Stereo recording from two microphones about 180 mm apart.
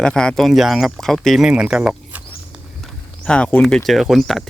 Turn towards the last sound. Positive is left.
turn(degrees=0)  # may be behind; listen again after turning